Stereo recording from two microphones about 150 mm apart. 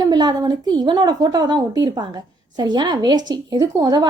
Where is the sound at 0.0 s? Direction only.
25° right (ahead or behind).